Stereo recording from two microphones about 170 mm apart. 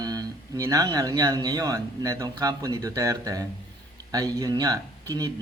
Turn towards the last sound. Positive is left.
turn(degrees=-20)  # may be behind; listen again after turning